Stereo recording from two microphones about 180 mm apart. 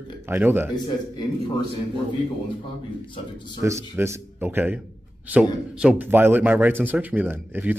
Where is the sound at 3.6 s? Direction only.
15° right (ahead or behind).